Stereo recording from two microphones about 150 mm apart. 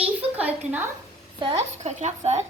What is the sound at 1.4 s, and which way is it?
A woman's voice, 40° right (ahead or behind).